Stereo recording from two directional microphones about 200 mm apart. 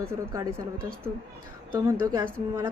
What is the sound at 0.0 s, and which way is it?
Speech, 15° right (ahead or behind).